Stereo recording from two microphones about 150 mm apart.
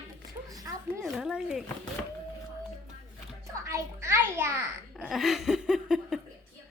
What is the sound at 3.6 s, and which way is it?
Speech, 20° right (ahead or behind).